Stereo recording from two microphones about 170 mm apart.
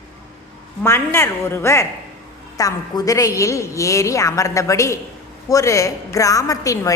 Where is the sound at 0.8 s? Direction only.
15° left (ahead or behind).